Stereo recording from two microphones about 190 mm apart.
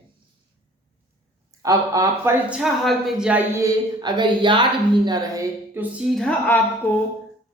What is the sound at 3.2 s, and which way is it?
A woman's voice, 10° right (ahead or behind).